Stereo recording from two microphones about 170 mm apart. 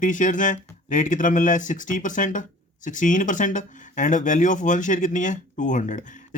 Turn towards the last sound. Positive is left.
turn(degrees=45)  # may be behind; listen again after turning